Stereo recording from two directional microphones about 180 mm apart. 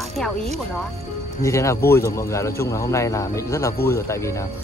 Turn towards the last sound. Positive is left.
turn(degrees=15)  # may be behind; listen again after turning